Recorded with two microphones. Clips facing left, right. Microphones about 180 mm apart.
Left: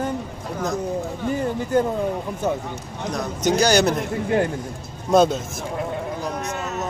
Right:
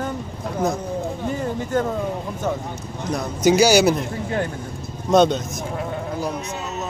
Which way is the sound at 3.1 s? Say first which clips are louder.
Right 4 dB; 5° right (ahead or behind).